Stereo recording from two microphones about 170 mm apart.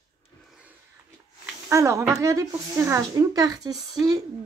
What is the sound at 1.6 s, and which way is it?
Speech, 15° right (ahead or behind).